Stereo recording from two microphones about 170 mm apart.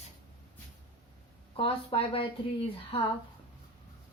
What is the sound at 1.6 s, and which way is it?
Speech, 35° left (ahead or behind).